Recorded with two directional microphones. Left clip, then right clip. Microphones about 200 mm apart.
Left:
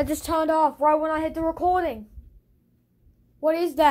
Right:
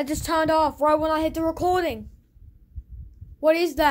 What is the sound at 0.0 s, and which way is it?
Speech, 5° right (ahead or behind).